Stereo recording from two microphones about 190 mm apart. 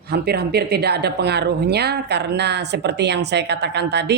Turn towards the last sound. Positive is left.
turn(degrees=-65)  # may be behind; listen again after turning